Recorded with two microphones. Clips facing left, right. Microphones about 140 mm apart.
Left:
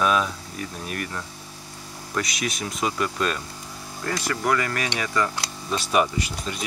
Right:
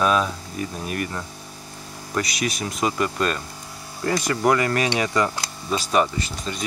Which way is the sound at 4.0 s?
20° right (ahead or behind).